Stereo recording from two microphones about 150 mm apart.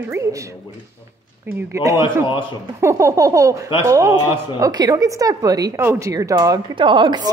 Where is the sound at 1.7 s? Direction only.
20° right (ahead or behind).